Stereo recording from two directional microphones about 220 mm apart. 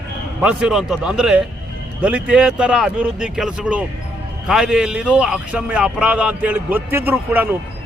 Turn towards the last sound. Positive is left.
turn(degrees=-10)  # may be behind; listen again after turning